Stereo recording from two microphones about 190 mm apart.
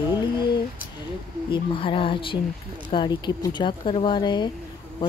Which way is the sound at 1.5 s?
25° left (ahead or behind).